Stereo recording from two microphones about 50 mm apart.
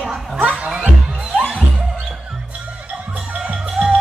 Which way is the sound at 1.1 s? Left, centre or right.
Centre.